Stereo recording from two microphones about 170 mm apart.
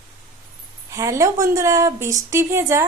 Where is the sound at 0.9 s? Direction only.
20° right (ahead or behind).